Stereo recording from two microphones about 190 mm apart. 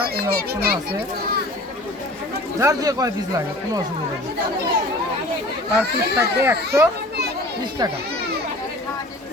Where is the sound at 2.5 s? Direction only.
15° right (ahead or behind).